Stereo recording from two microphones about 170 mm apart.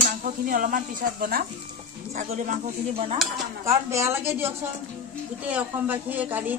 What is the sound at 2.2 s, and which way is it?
Speech, 45° right (ahead or behind).